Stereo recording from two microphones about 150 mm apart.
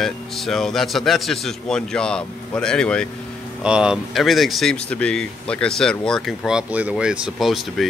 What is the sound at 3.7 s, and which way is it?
Speech, 5° right (ahead or behind).